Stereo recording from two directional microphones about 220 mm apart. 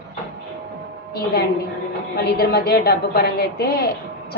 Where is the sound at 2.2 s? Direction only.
45° left (ahead or behind).